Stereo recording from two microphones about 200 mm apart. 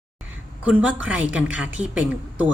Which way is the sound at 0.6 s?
5° right (ahead or behind).